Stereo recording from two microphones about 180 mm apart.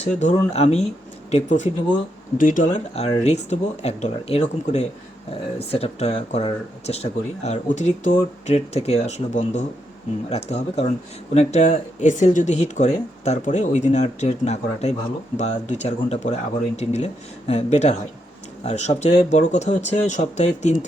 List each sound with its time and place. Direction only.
0.0 s speech: 40° left (ahead or behind)